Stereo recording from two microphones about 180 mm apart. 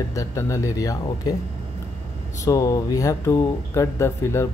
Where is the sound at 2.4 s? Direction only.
20° left (ahead or behind).